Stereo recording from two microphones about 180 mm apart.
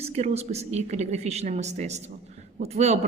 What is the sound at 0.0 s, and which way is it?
Speech, 35° right (ahead or behind).